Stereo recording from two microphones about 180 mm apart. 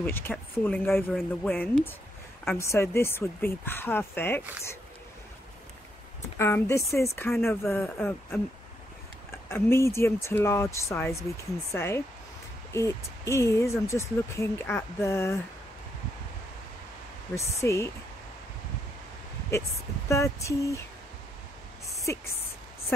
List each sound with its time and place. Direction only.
0.0 s speech: 10° left (ahead or behind)
6.3 s speech: 15° left (ahead or behind)
9.5 s speech: 15° left (ahead or behind)
17.4 s speech: 15° left (ahead or behind)
20.1 s speech: 15° left (ahead or behind)
21.8 s a sound: 15° left (ahead or behind)